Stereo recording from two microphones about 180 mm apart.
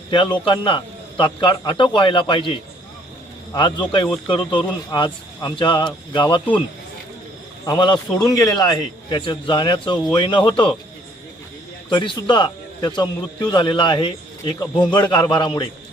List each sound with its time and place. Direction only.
0.1 s a man's voice: 25° left (ahead or behind)
7.6 s a man's voice: 25° left (ahead or behind)
11.9 s a man's voice: 25° left (ahead or behind)